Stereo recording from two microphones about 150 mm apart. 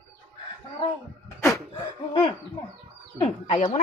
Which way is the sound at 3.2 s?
45° left (ahead or behind).